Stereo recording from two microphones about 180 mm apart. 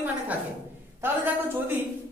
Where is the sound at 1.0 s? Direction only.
10° right (ahead or behind).